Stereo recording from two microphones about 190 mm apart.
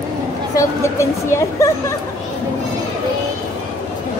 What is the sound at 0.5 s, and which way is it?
Speech, 15° left (ahead or behind).